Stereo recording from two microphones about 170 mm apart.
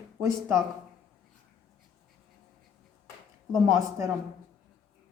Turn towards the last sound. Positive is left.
turn(degrees=-20)  # may be behind; listen again after turning